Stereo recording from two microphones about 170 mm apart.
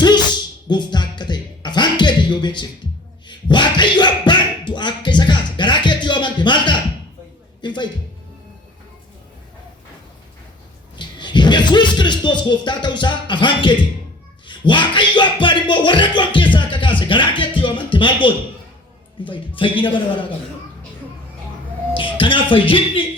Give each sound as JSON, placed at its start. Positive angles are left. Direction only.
{"t": 0.7, "sound": "music", "side_deg": 25}
{"t": 3.2, "sound": "a sound", "side_deg": 25}
{"t": 7.6, "sound": "speech", "side_deg": 25}
{"t": 10.9, "sound": "speech", "side_deg": 25}
{"t": 14.4, "sound": "music", "side_deg": 30}
{"t": 19.2, "sound": "speech", "side_deg": 30}
{"t": 21.9, "sound": "speech", "side_deg": 30}